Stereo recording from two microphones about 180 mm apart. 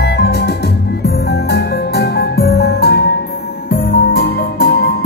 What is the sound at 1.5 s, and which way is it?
Music, 65° left (ahead or behind).